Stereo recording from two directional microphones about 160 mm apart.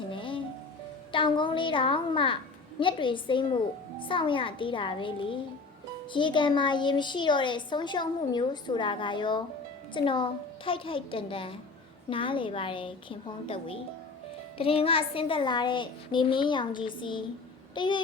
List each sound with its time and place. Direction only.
0.1 s music: 30° left (ahead or behind)
1.1 s a child's voice: 30° left (ahead or behind)